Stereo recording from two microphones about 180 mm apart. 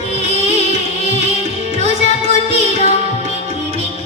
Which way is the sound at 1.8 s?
35° left (ahead or behind).